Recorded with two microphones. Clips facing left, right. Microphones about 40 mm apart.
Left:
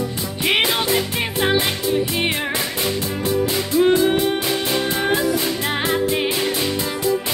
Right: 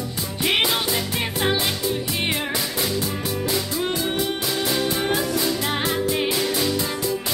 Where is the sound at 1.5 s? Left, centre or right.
Left.